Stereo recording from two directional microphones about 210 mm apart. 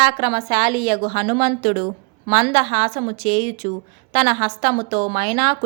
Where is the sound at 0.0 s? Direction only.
25° right (ahead or behind).